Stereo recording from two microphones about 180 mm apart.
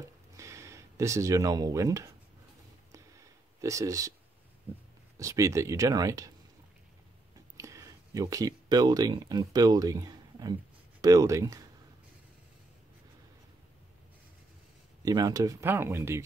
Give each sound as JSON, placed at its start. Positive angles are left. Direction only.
{"t": 0.4, "sound": "speech", "side_deg": -15}
{"t": 3.6, "sound": "speech", "side_deg": -20}
{"t": 5.1, "sound": "speech", "side_deg": -15}
{"t": 7.5, "sound": "speech", "side_deg": -15}
{"t": 15.0, "sound": "speech", "side_deg": -20}